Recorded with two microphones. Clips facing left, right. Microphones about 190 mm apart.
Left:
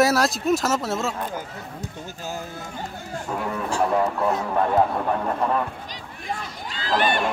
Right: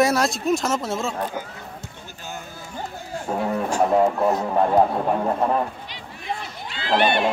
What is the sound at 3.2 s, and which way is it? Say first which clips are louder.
Speech: right 4 dB; 30° right (ahead or behind).